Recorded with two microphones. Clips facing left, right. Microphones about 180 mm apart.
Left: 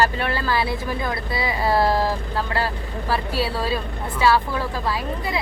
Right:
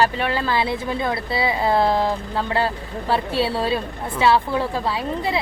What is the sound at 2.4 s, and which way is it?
A woman's voice, 20° right (ahead or behind).